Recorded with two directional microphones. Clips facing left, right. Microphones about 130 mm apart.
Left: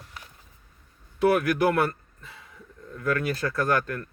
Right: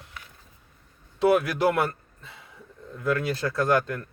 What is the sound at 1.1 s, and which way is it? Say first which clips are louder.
Speech: even; 25° right (ahead or behind).